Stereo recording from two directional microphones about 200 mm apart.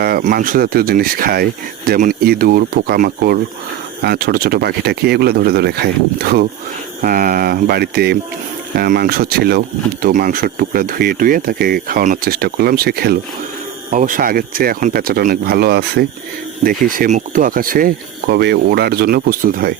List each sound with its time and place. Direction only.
0.0 s speech: 50° right (ahead or behind)